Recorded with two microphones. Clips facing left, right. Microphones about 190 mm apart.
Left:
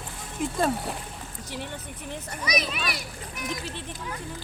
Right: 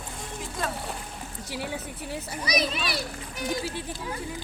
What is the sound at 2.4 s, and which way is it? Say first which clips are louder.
A child's voice: right 1 dB; 30° right (ahead or behind).